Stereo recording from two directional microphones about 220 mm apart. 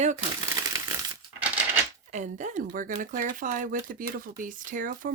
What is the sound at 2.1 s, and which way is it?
Speech, 35° right (ahead or behind).